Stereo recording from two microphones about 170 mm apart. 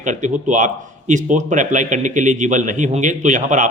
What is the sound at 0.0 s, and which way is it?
Speech, 45° right (ahead or behind).